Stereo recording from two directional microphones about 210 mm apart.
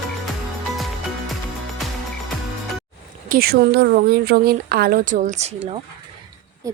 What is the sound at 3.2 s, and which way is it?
Speech, 45° right (ahead or behind).